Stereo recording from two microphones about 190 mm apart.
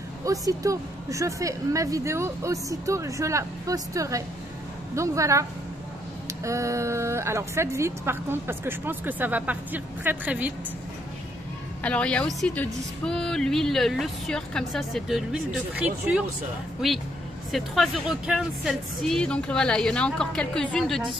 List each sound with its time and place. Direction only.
0.2 s a woman's voice: 15° right (ahead or behind)
11.8 s a woman's voice: 5° left (ahead or behind)
17.5 s a woman's voice: centre (ahead or behind)